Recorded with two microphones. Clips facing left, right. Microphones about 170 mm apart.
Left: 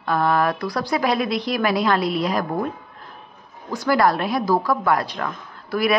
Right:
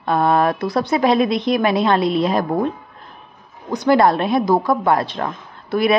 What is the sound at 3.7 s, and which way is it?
A woman's voice, 20° right (ahead or behind).